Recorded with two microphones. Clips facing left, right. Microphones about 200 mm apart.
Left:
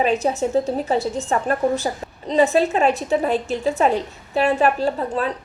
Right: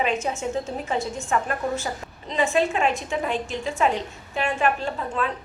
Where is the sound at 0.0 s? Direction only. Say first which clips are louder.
Left 6 dB; 35° left (ahead or behind).